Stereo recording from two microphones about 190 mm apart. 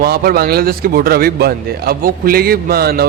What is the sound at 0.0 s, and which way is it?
A man's voice, 55° right (ahead or behind).